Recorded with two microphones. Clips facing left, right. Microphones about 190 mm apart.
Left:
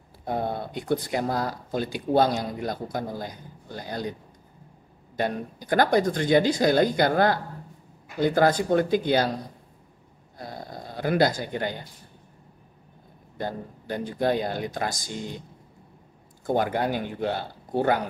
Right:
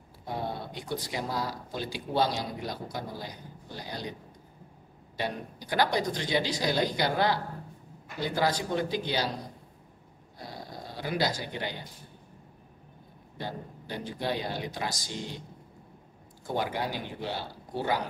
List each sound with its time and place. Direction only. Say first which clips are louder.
0.2 s speech: left 6 dB; 55° left (ahead or behind)
5.1 s speech: left 6 dB; 50° left (ahead or behind)
10.4 s a sound: left 4 dB; 50° left (ahead or behind)
13.4 s speech: left 6 dB; 50° left (ahead or behind)
16.4 s speech: left 7 dB; 50° left (ahead or behind)